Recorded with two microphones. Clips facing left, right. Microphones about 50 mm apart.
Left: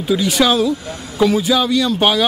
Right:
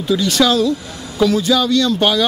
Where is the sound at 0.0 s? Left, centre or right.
Centre.